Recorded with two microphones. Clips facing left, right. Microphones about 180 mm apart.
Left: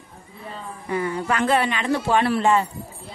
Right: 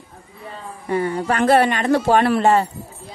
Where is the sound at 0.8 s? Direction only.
30° right (ahead or behind).